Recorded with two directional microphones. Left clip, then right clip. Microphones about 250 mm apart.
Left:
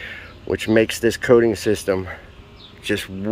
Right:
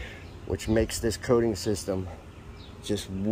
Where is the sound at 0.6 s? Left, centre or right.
Left.